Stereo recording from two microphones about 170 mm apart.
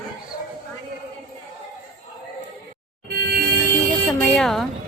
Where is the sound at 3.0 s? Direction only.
70° right (ahead or behind).